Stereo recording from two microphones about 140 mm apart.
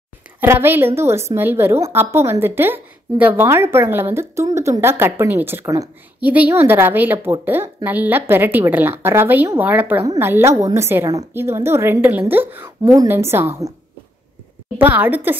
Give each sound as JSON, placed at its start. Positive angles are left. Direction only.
{"t": 0.4, "sound": "a woman's voice", "side_deg": -15}
{"t": 14.8, "sound": "a woman's voice", "side_deg": -10}